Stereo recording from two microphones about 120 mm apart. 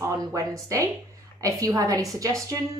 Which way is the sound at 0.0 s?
30° right (ahead or behind).